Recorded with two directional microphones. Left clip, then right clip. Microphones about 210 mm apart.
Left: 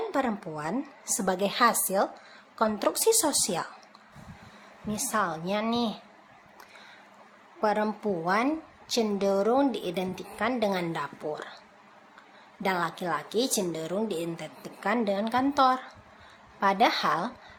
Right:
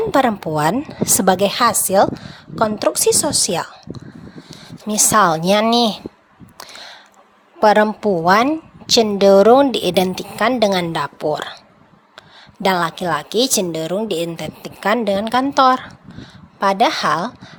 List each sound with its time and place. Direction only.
0.1 s a woman's voice: 40° right (ahead or behind)
4.9 s a woman's voice: 50° right (ahead or behind)
6.6 s a sound: 45° right (ahead or behind)
7.6 s a woman's voice: 45° right (ahead or behind)
12.6 s a woman's voice: 40° right (ahead or behind)